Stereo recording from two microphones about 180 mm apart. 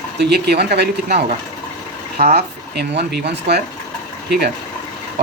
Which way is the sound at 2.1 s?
55° right (ahead or behind).